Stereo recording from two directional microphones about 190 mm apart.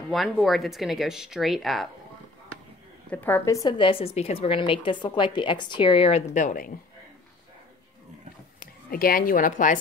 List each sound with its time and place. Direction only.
0.1 s speech: centre (ahead or behind)
3.1 s a woman's voice: 10° left (ahead or behind); by 6.7 s 45° left (ahead or behind)
8.9 s a woman's voice: 50° left (ahead or behind)